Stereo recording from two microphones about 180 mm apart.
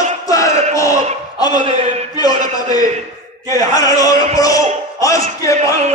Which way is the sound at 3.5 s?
20° left (ahead or behind).